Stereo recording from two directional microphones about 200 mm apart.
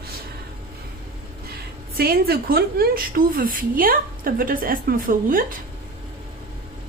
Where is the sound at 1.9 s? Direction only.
50° right (ahead or behind).